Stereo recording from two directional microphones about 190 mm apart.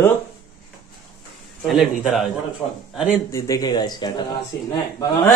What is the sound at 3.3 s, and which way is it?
Speech, 20° left (ahead or behind).